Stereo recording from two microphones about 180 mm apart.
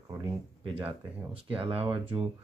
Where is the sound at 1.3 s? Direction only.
30° right (ahead or behind).